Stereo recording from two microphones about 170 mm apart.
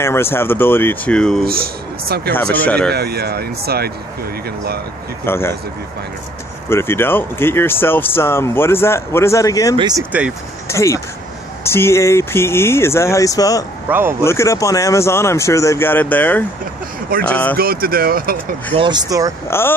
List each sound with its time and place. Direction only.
0.0 s speech: 15° left (ahead or behind)
1.4 s speech: 65° right (ahead or behind)
2.3 s speech: 10° left (ahead or behind)
2.9 s speech: 70° right (ahead or behind)
5.2 s speech: 15° left (ahead or behind)
6.7 s speech: 15° left (ahead or behind)
9.8 s speech: 25° right (ahead or behind)
10.7 s speech: 15° left (ahead or behind)
13.8 s speech: 10° right (ahead or behind)
14.2 s speech: 15° left (ahead or behind)
17.6 s speech: 60° right (ahead or behind)
18.8 s speech: 25° right (ahead or behind)
19.4 s speech: 15° left (ahead or behind)